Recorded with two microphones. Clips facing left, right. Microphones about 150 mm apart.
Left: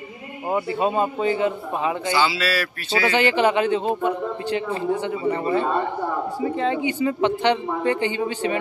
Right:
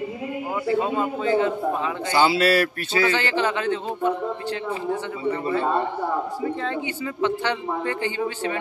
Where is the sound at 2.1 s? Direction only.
50° right (ahead or behind).